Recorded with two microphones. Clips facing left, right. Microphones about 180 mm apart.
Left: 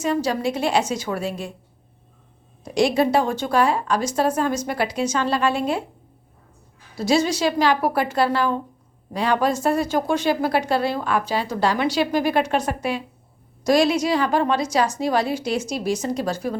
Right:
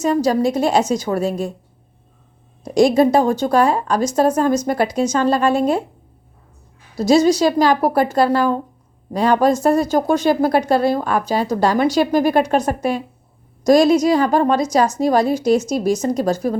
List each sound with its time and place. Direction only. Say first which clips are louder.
0.0 s a woman's voice: right 6 dB; 40° right (ahead or behind)
2.6 s speech: right 6 dB; 40° right (ahead or behind)
6.9 s speech: right 7 dB; 40° right (ahead or behind)